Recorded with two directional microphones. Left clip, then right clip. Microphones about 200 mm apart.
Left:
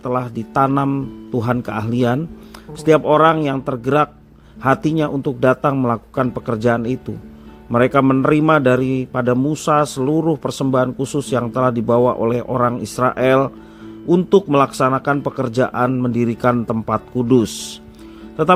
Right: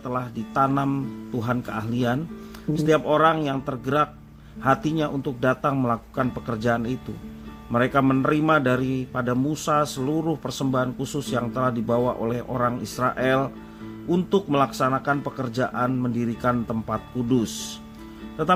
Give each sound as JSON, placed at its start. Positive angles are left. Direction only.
{"t": 0.0, "sound": "a man's voice", "side_deg": 30}